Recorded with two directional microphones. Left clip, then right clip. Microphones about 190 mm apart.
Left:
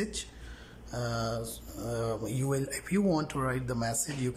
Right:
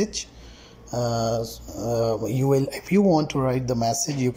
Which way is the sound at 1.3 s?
5° right (ahead or behind).